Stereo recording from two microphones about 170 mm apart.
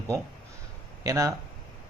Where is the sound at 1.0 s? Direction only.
20° right (ahead or behind).